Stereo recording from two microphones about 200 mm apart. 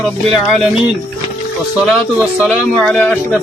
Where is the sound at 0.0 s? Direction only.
Centre (ahead or behind).